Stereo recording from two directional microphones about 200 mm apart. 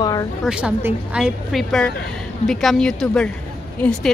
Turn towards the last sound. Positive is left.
turn(degrees=5)  # may be behind; listen again after turning